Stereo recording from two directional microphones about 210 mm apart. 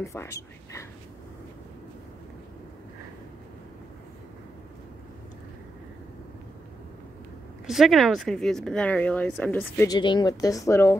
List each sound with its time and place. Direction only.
0.0 s speech: 15° left (ahead or behind)
7.6 s speech: centre (ahead or behind)
9.9 s a woman's voice: 20° left (ahead or behind)